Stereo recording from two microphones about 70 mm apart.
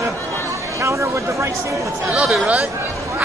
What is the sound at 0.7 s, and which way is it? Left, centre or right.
Speech, right.